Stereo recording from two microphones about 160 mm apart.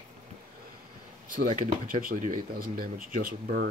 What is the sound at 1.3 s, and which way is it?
Speech, 60° right (ahead or behind).